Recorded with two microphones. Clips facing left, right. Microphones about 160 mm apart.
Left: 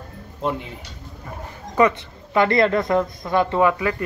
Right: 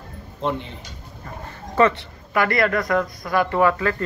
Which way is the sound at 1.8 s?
20° left (ahead or behind).